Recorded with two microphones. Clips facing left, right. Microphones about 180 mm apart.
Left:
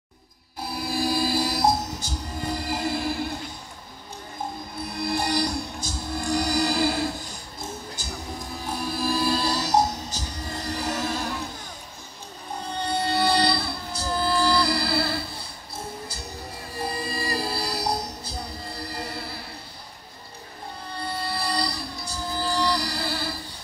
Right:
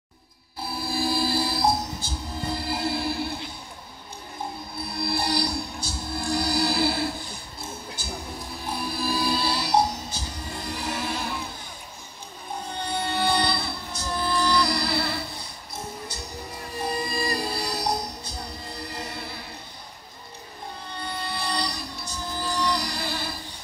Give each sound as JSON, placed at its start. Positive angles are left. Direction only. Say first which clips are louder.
{"t": 0.7, "sound": "music", "louder": "left 1 dB", "side_deg": 45}
{"t": 5.0, "sound": "music", "louder": "left 1 dB", "side_deg": 45}
{"t": 13.0, "sound": "music", "louder": "left 2 dB", "side_deg": 35}
{"t": 16.9, "sound": "music", "louder": "right 2 dB", "side_deg": 30}
{"t": 21.0, "sound": "music", "louder": "left 2 dB", "side_deg": 35}